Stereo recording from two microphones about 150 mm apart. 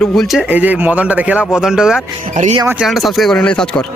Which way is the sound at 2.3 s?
55° right (ahead or behind).